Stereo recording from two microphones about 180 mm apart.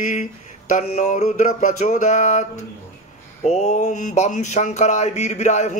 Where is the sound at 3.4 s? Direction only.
40° left (ahead or behind).